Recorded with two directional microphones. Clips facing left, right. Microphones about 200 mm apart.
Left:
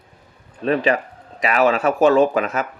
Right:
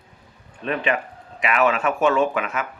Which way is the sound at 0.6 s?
35° left (ahead or behind).